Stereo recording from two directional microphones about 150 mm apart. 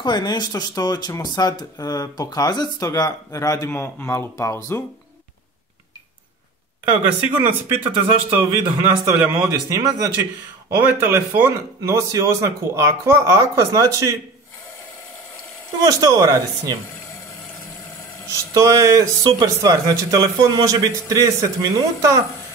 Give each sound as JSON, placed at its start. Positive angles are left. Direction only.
{"t": 0.0, "sound": "speech", "side_deg": 30}
{"t": 6.8, "sound": "speech", "side_deg": -15}
{"t": 15.8, "sound": "speech", "side_deg": -25}
{"t": 18.3, "sound": "speech", "side_deg": -20}